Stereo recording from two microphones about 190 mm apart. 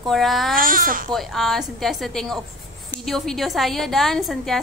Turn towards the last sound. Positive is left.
turn(degrees=0)  # may be behind; listen again after turning